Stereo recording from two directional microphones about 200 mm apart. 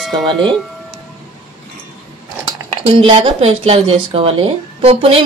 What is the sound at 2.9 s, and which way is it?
Speech, 30° right (ahead or behind).